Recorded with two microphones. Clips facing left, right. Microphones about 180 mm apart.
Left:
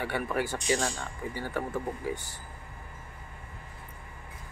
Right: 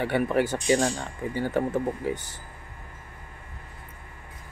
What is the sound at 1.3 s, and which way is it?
Speech, 25° right (ahead or behind).